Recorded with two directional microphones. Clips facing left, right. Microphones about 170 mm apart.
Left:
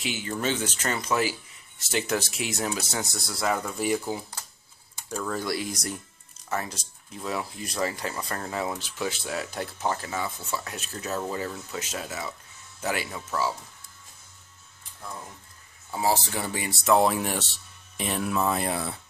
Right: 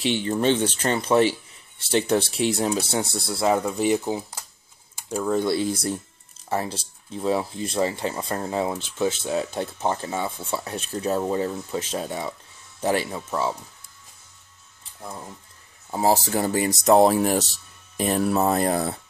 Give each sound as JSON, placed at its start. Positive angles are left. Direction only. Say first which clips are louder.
{"t": 0.0, "sound": "speech", "louder": "right 7 dB", "side_deg": -30}
{"t": 15.9, "sound": "speech", "louder": "right 5 dB", "side_deg": -40}